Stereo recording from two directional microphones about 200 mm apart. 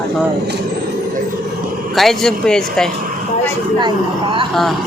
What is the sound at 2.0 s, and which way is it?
Speech, centre (ahead or behind).